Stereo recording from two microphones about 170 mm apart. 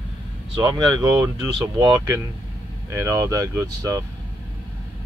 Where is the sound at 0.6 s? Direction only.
20° right (ahead or behind).